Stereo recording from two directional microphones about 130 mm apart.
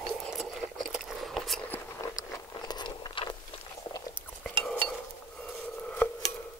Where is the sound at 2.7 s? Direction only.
35° left (ahead or behind).